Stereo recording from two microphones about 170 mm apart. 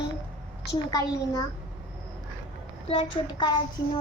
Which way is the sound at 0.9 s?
20° left (ahead or behind).